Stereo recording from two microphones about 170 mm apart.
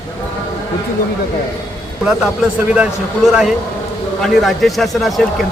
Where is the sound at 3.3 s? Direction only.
Centre (ahead or behind).